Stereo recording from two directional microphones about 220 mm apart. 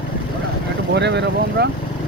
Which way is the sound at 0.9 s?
55° right (ahead or behind).